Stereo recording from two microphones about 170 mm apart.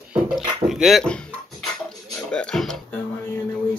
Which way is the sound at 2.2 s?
5° left (ahead or behind).